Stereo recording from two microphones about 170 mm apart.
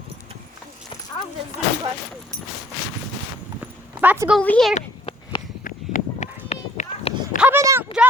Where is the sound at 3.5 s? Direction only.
10° right (ahead or behind).